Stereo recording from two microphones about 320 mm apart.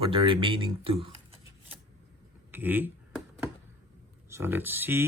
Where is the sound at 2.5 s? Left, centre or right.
Centre.